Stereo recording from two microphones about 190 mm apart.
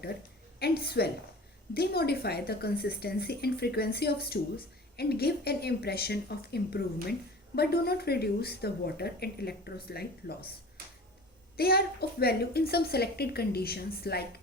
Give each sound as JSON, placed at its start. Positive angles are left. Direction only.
{"t": 0.6, "sound": "speech", "side_deg": 55}
{"t": 11.5, "sound": "speech", "side_deg": 55}